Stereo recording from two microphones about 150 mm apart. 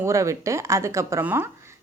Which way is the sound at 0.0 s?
20° right (ahead or behind).